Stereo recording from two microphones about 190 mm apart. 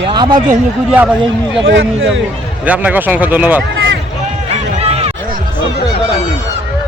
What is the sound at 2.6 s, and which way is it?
Speech, 5° right (ahead or behind).